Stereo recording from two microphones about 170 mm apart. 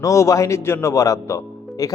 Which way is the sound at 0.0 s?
20° left (ahead or behind).